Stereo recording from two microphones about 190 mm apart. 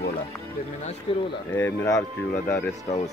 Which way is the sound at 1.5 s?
10° left (ahead or behind).